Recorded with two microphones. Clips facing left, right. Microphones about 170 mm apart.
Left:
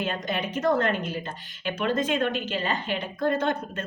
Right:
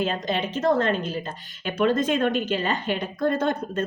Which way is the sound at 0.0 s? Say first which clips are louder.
Right 3 dB; 30° right (ahead or behind).